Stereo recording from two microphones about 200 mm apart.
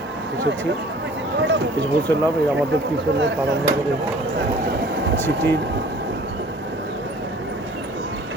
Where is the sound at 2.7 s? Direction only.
65° right (ahead or behind).